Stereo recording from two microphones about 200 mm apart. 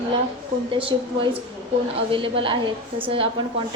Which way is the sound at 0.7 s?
25° right (ahead or behind).